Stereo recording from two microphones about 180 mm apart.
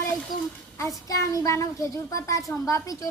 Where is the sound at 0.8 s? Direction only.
20° left (ahead or behind).